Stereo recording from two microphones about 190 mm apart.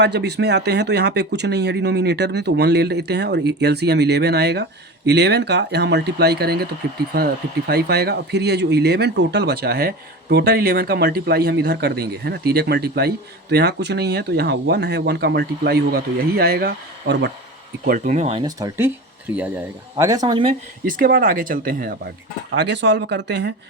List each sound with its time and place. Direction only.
0.0 s speech: 60° right (ahead or behind)
17.8 s speech: 45° right (ahead or behind)
18.4 s speech: 15° right (ahead or behind)
20.8 s speech: 45° right (ahead or behind)
22.5 s speech: 65° right (ahead or behind)